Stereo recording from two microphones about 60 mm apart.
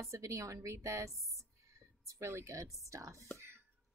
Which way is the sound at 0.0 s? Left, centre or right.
Right.